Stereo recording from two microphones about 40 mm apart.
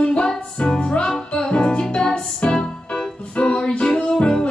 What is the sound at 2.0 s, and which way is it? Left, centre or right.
Music, centre.